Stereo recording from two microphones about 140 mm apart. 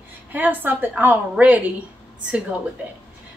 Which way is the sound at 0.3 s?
10° right (ahead or behind).